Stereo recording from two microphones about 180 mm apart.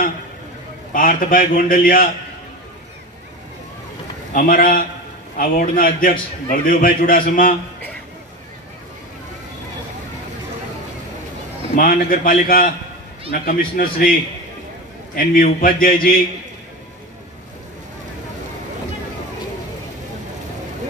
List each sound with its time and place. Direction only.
0.9 s a man's voice: 50° left (ahead or behind)
4.3 s a man's voice: 50° left (ahead or behind)
11.7 s a man's voice: 50° left (ahead or behind)
15.1 s a man's voice: 50° left (ahead or behind)